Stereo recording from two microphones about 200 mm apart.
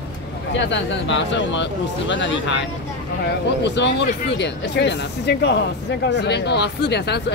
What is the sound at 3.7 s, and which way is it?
Speech, 60° left (ahead or behind).